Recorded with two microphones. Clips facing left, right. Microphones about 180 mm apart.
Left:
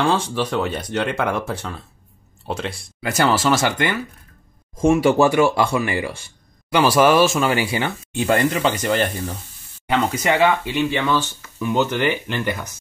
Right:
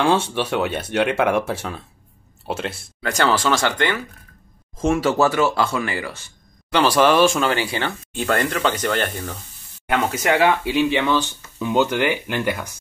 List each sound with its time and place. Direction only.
0.0 s speech: 5° right (ahead or behind)
10.1 s speech: centre (ahead or behind)
10.9 s speech: 20° right (ahead or behind)